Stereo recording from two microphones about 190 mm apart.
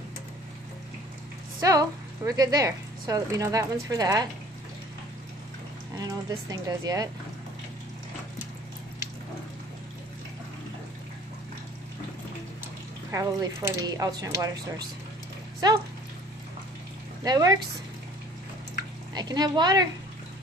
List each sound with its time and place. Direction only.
1.6 s a woman's voice: 15° right (ahead or behind)
5.9 s speech: 20° right (ahead or behind)
13.1 s speech: 15° right (ahead or behind)
17.2 s speech: 20° right (ahead or behind)
19.1 s a woman's voice: 20° right (ahead or behind)